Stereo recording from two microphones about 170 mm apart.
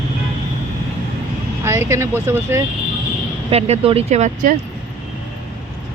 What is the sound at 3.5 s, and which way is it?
Speech, 35° right (ahead or behind).